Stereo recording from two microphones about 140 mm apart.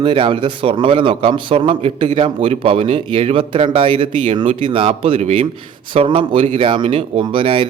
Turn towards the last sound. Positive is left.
turn(degrees=-40)  # may be behind; listen again after turning